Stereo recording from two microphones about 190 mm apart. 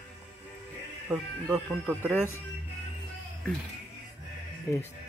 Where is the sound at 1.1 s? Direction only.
5° right (ahead or behind).